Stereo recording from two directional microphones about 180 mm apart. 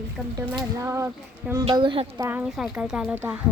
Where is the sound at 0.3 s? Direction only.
15° right (ahead or behind).